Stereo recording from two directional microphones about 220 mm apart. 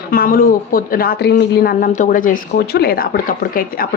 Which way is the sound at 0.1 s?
40° left (ahead or behind).